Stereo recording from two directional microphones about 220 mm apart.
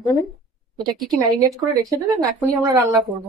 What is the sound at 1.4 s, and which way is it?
Speech, 15° right (ahead or behind).